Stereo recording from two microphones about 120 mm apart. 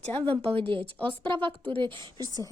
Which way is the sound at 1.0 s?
40° right (ahead or behind).